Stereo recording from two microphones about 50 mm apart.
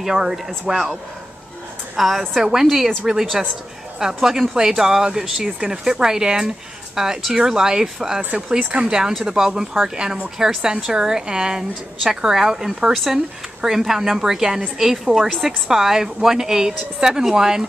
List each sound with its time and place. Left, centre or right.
0.0 s a woman's voice: centre
2.0 s a woman's voice: centre
8.2 s a woman's voice: right
10.1 s a woman's voice: right